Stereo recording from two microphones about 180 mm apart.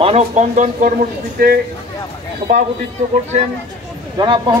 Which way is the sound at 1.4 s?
55° right (ahead or behind).